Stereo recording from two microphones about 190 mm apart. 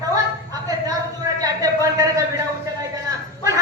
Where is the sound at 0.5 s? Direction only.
20° right (ahead or behind).